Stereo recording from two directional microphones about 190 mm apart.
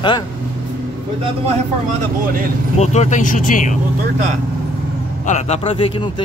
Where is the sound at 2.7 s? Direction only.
35° left (ahead or behind).